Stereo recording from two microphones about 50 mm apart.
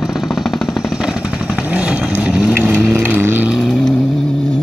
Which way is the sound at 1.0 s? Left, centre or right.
Centre.